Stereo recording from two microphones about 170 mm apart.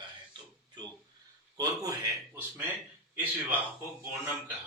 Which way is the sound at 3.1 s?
10° right (ahead or behind).